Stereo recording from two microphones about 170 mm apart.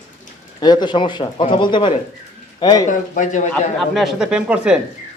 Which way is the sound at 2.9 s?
50° left (ahead or behind).